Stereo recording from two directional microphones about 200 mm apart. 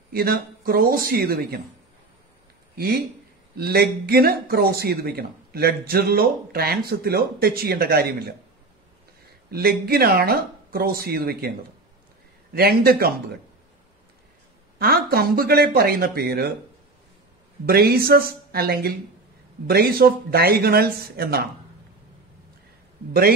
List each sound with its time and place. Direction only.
0.1 s speech: 50° right (ahead or behind)
3.5 s speech: 50° right (ahead or behind)
9.5 s speech: 50° right (ahead or behind)
12.5 s speech: 50° right (ahead or behind)
14.8 s speech: 50° right (ahead or behind)
17.6 s speech: 50° right (ahead or behind)